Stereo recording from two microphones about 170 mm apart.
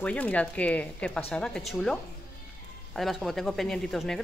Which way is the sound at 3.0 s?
Centre (ahead or behind).